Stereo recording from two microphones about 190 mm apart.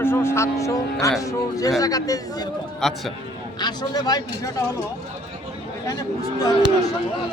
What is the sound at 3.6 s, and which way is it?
Speech, 20° left (ahead or behind).